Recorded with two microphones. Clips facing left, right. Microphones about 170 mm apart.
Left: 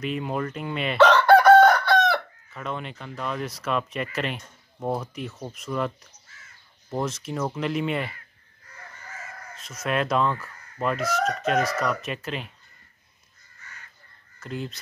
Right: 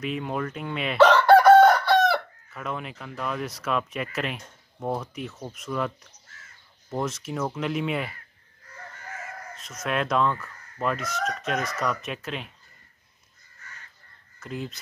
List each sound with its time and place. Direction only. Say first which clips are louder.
0.0 s speech: left 1 dB; centre (ahead or behind)
9.6 s speech: left 2 dB; centre (ahead or behind)
14.4 s speech: left 1 dB; centre (ahead or behind)